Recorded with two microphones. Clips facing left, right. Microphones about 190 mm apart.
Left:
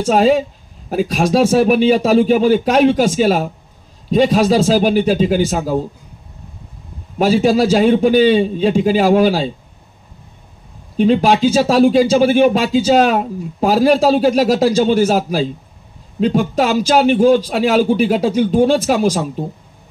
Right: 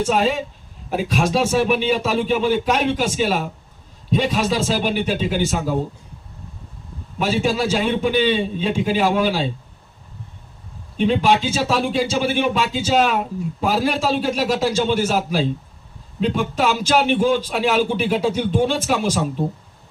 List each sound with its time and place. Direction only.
0.0 s speech: 40° left (ahead or behind)
7.2 s speech: 40° left (ahead or behind)
11.1 s speech: 40° left (ahead or behind)